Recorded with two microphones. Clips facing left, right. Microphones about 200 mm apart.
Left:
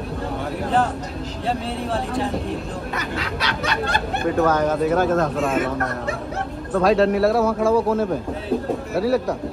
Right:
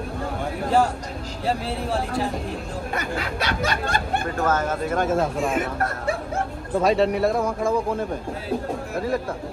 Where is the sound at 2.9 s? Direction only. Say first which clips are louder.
Right 2 dB; 50° right (ahead or behind).